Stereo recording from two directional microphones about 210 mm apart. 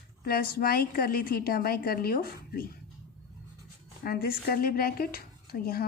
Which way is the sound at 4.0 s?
45° left (ahead or behind).